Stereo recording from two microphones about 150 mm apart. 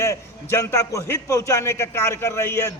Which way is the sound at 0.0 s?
20° left (ahead or behind).